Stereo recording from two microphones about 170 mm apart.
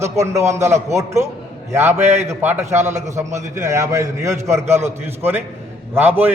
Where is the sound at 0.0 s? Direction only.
15° right (ahead or behind).